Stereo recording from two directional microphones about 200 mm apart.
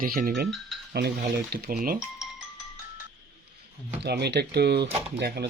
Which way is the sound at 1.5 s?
55° right (ahead or behind).